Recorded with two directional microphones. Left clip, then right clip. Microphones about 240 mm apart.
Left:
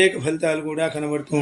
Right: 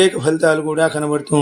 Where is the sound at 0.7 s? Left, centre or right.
Right.